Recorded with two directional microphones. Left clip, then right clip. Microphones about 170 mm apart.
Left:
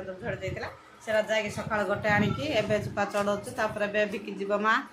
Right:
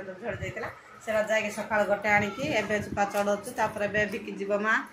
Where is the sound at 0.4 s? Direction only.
10° right (ahead or behind).